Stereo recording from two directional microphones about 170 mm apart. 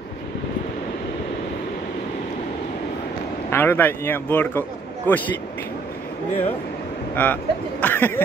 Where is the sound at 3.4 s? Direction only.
10° left (ahead or behind).